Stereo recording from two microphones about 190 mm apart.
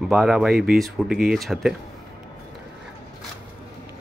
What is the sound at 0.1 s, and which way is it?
Speech, 5° right (ahead or behind).